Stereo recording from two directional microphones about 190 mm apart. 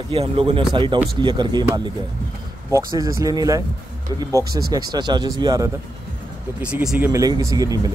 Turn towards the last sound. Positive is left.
turn(degrees=-20)  # may be behind; listen again after turning